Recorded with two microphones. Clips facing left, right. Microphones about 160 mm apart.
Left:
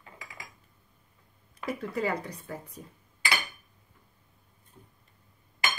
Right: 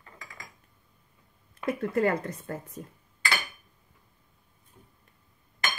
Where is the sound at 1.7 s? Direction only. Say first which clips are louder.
Right 5 dB; 50° right (ahead or behind).